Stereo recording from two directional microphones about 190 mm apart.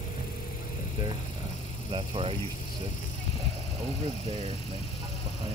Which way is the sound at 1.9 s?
30° right (ahead or behind).